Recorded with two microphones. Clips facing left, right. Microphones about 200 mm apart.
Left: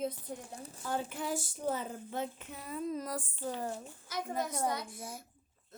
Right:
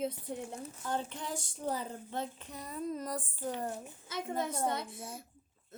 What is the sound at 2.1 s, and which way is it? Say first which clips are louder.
A woman's voice: left 1 dB; 5° left (ahead or behind).